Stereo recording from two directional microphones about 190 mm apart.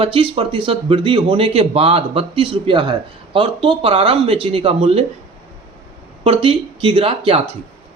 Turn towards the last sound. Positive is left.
turn(degrees=-30)  # may be behind; listen again after turning